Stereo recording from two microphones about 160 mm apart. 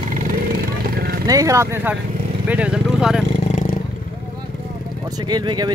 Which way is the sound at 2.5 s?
5° right (ahead or behind).